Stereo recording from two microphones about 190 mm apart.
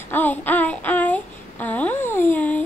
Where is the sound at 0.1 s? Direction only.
10° left (ahead or behind).